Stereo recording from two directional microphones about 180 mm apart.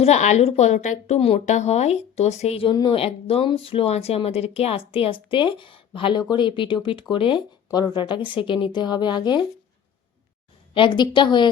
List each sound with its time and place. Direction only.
0.0 s a woman's voice: 40° left (ahead or behind)
10.8 s a woman's voice: 25° left (ahead or behind)